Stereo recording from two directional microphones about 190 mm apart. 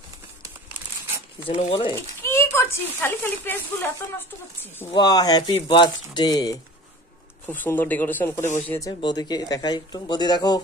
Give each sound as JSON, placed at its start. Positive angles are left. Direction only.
{"t": 1.5, "sound": "speech", "side_deg": 25}
{"t": 2.0, "sound": "speech", "side_deg": 15}
{"t": 4.9, "sound": "speech", "side_deg": 20}
{"t": 7.4, "sound": "speech", "side_deg": 10}